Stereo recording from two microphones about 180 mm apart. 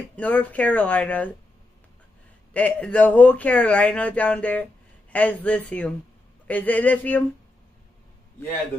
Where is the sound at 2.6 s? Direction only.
5° left (ahead or behind).